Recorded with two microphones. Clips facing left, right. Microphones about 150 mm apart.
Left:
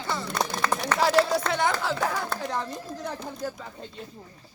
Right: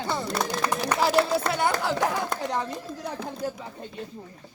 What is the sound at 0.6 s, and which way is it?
Speech, 15° right (ahead or behind).